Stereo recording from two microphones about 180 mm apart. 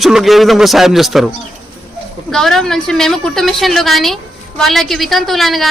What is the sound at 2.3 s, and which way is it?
A woman's voice, centre (ahead or behind).